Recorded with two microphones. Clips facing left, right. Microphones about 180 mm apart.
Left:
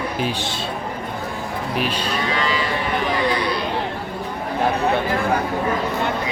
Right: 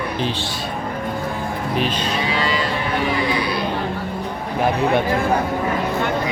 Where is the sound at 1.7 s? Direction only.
10° left (ahead or behind).